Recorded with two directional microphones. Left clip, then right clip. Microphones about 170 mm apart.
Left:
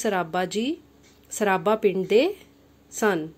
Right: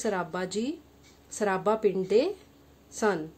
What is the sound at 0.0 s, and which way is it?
A woman's voice, 15° left (ahead or behind).